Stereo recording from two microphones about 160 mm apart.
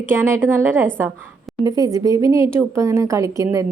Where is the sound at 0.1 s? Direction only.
15° right (ahead or behind).